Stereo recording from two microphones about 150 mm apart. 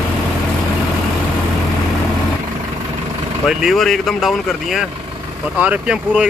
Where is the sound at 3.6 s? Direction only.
Centre (ahead or behind).